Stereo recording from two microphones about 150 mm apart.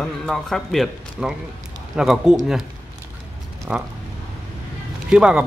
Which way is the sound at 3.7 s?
10° right (ahead or behind).